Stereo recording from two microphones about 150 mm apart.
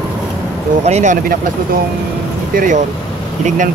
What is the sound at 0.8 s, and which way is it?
Speech, 50° right (ahead or behind).